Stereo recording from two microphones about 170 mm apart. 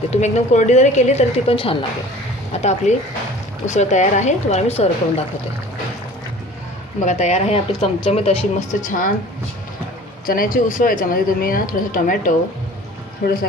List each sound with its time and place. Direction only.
0.1 s a woman's voice: 45° left (ahead or behind)
7.1 s speech: 45° left (ahead or behind)
10.2 s a woman's voice: 55° left (ahead or behind)
13.2 s a woman's voice: 60° left (ahead or behind)